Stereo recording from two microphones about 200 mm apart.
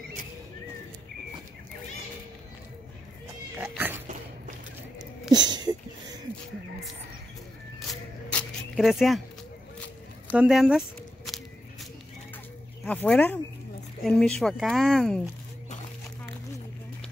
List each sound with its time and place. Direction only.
3.5 s cat: 10° right (ahead or behind)
5.3 s a sound: 20° right (ahead or behind)
7.8 s music: 5° left (ahead or behind)
10.3 s speech: 5° right (ahead or behind)
12.8 s speech: 5° left (ahead or behind)